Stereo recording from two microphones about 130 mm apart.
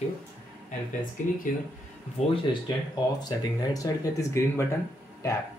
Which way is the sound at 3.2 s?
25° left (ahead or behind).